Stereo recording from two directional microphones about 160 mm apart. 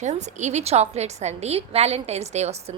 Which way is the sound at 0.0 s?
45° right (ahead or behind).